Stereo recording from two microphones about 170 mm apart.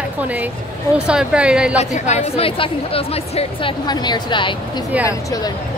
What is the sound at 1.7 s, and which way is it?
A woman's voice, 40° left (ahead or behind).